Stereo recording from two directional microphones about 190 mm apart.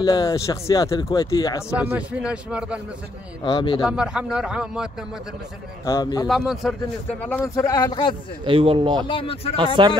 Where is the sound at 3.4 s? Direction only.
25° left (ahead or behind).